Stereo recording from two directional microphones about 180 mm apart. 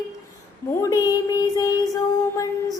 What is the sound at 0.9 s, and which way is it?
Child singing, 20° left (ahead or behind).